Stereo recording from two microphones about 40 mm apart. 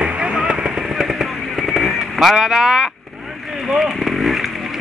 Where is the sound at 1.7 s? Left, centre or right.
Centre.